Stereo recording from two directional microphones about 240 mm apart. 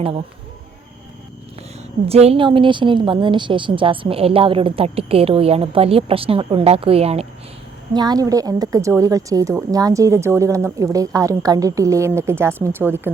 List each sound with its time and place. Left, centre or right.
2.0 s a woman's voice: right; by 13.0 s centre